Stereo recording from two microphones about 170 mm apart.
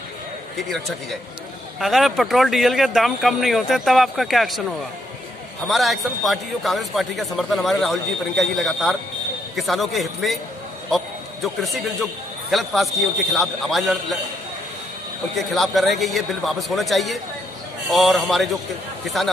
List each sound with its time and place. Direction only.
0.6 s speech: centre (ahead or behind)
11.4 s speech: centre (ahead or behind)
15.3 s speech: centre (ahead or behind)